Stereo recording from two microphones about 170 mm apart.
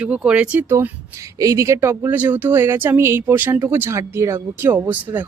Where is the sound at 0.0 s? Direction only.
5° right (ahead or behind).